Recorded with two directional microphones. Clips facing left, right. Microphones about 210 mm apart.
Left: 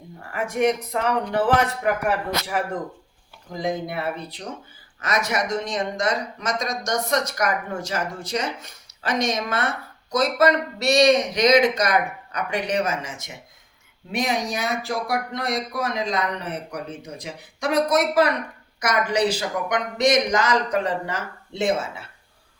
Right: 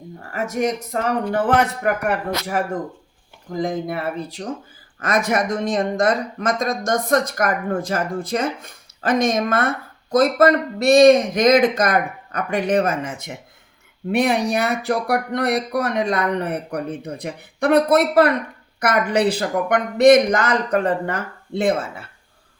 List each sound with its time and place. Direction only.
0.3 s speech: 40° right (ahead or behind)
3.6 s speech: 50° right (ahead or behind)
4.9 s speech: 50° right (ahead or behind)